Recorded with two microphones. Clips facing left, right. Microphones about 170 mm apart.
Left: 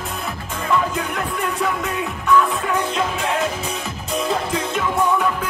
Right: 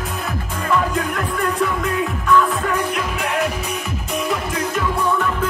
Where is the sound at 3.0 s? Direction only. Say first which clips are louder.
Even; 25° left (ahead or behind).